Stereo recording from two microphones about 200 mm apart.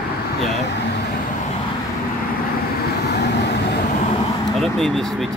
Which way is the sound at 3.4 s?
55° left (ahead or behind).